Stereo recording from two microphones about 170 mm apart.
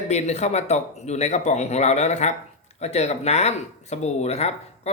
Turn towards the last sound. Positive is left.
turn(degrees=40)  # may be behind; listen again after turning